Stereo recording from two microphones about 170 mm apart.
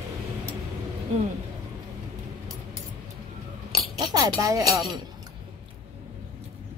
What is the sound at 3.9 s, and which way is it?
Speech, 25° right (ahead or behind).